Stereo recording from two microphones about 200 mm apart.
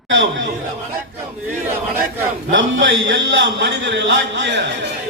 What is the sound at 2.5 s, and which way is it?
A man's voice, 70° right (ahead or behind).